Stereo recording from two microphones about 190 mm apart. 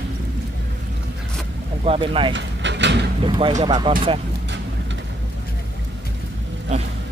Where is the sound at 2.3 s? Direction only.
70° right (ahead or behind).